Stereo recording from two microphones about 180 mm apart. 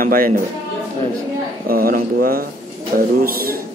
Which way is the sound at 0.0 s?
50° right (ahead or behind).